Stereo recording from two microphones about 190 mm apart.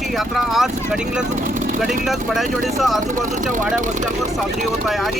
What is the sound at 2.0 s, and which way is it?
Speech, centre (ahead or behind).